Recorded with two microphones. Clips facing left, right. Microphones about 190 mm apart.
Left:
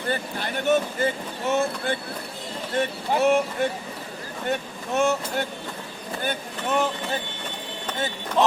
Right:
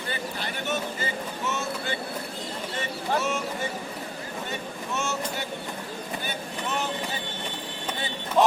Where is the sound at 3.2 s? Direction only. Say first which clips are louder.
Left 11 dB; 60° left (ahead or behind).